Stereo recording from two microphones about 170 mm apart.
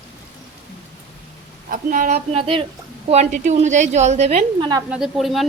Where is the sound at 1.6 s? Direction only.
55° right (ahead or behind).